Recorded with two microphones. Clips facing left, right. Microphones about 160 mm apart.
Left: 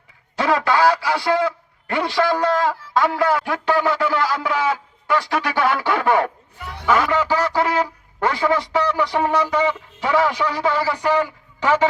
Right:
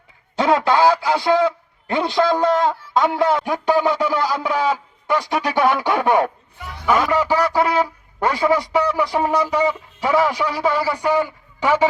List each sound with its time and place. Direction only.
0.3 s a man's voice: 20° right (ahead or behind)